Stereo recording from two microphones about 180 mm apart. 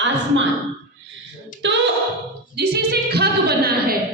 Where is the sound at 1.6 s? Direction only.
85° right.